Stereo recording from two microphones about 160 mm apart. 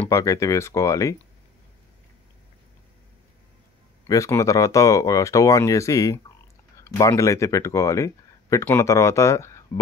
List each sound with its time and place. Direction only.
0.0 s speech: 20° left (ahead or behind)
4.1 s speech: 20° left (ahead or behind)